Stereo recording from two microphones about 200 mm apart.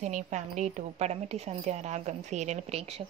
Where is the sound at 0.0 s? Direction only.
35° right (ahead or behind).